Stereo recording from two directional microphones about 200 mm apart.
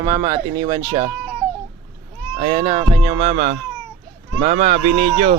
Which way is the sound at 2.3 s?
25° right (ahead or behind).